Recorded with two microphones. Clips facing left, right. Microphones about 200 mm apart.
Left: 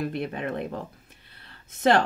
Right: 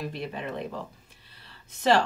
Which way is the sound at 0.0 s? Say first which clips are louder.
Left 4 dB; 55° left (ahead or behind).